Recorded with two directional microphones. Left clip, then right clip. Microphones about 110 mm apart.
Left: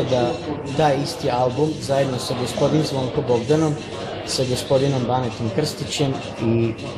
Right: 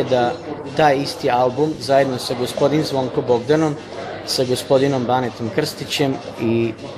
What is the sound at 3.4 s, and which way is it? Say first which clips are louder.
Speech: right 2 dB; 30° right (ahead or behind).